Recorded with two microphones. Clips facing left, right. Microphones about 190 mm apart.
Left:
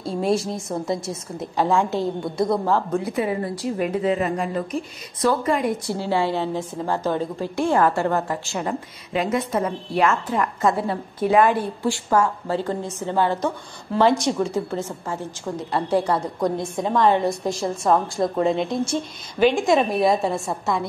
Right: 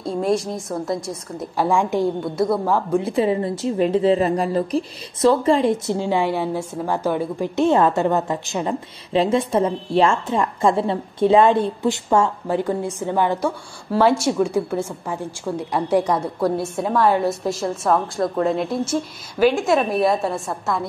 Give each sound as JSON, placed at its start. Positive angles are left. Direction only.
{"t": 0.0, "sound": "a woman's voice", "side_deg": 0}
{"t": 1.6, "sound": "a woman's voice", "side_deg": -15}
{"t": 2.3, "sound": "a woman's voice", "side_deg": -5}
{"t": 3.0, "sound": "a woman's voice", "side_deg": -25}